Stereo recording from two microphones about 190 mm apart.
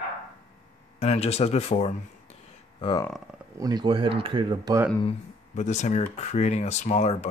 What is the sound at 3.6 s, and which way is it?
Speech, 20° right (ahead or behind).